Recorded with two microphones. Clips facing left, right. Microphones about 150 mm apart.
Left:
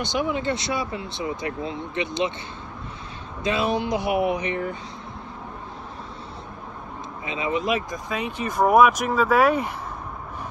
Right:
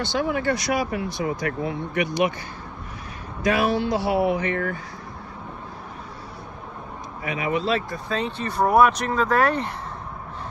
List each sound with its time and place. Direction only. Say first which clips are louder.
0.0 s speech: right 1 dB; 15° left (ahead or behind)
3.4 s speech: right 2 dB; 20° left (ahead or behind)
7.2 s speech: right 1 dB; 25° left (ahead or behind)